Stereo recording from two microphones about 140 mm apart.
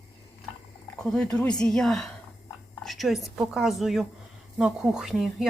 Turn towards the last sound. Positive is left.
turn(degrees=-5)  # may be behind; listen again after turning